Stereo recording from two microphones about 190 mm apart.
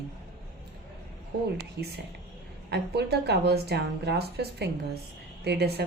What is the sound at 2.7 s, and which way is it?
A woman's voice, 60° right (ahead or behind).